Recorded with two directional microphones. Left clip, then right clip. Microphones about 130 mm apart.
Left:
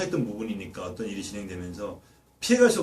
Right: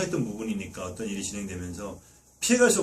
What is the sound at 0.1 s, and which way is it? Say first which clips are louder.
A man's voice: left 1 dB; 20° right (ahead or behind).